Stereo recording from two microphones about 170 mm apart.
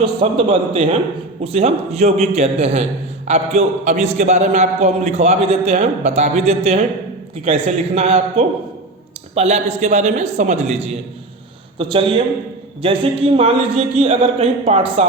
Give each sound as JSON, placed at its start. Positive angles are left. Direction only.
{"t": 0.0, "sound": "a man's voice", "side_deg": -30}